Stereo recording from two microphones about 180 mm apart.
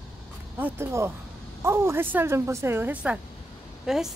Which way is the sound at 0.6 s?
15° right (ahead or behind).